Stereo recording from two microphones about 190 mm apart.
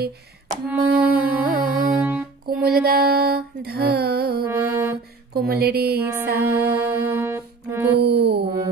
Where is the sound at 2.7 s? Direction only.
50° right (ahead or behind).